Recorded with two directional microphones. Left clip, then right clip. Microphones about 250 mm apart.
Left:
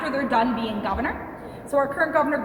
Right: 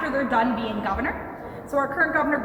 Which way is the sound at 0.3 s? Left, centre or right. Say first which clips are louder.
Even; left.